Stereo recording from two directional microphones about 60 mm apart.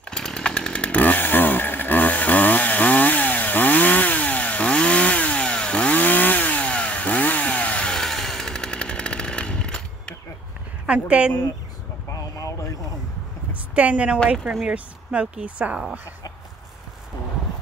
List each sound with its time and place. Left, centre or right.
0.1 s chainsaw: centre
5.9 s chainsaw: left
7.9 s chainsaw: centre
10.9 s speech: centre
12.1 s a sound: left
13.7 s speech: right